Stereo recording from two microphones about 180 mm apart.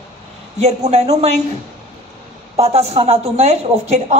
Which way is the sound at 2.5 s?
35° right (ahead or behind).